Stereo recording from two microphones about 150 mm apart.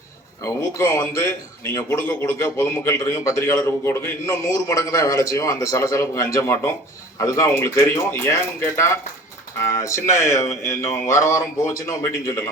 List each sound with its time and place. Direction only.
0.4 s a man's voice: 20° left (ahead or behind)